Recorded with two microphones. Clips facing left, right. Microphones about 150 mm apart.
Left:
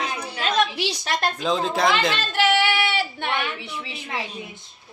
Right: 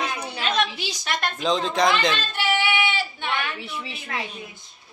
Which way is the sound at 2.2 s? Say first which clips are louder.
Left 4 dB; 85° left.